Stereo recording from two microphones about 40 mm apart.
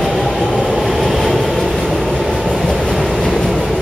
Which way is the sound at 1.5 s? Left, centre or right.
Centre.